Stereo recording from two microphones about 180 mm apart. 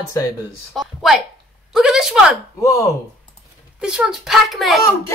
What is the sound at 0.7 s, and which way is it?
Speech, centre (ahead or behind).